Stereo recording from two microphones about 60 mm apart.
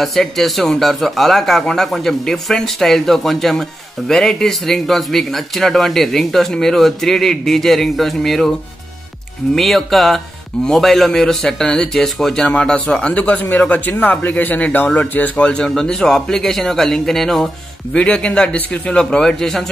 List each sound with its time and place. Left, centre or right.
0.0 s speech: centre
9.6 s a man's voice: centre
17.9 s a man's voice: centre